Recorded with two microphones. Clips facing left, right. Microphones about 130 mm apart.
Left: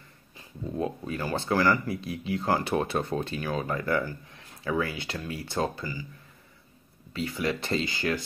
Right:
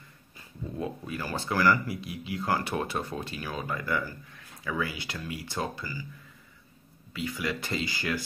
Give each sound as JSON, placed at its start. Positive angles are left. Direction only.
{"t": 0.7, "sound": "speech", "side_deg": 25}
{"t": 7.1, "sound": "speech", "side_deg": 30}